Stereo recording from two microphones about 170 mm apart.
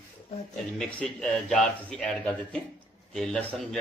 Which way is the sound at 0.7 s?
5° left (ahead or behind).